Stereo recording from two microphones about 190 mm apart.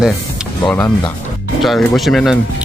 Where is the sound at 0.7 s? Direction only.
10° left (ahead or behind).